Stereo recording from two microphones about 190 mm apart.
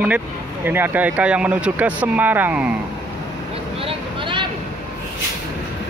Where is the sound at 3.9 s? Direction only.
25° right (ahead or behind).